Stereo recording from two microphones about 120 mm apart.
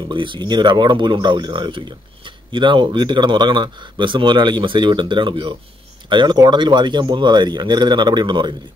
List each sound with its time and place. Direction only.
0.1 s speech: 40° right (ahead or behind)